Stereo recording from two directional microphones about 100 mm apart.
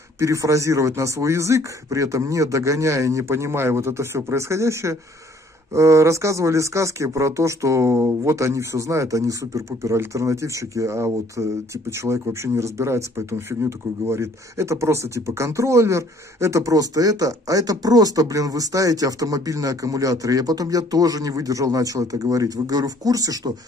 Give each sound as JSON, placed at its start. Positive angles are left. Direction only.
{"t": 0.2, "sound": "a man's voice", "side_deg": -30}